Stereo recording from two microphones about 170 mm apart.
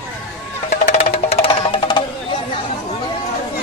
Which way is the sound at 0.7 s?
35° left (ahead or behind).